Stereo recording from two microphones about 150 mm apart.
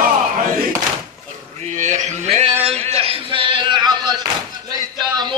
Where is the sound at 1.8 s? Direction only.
55° right (ahead or behind).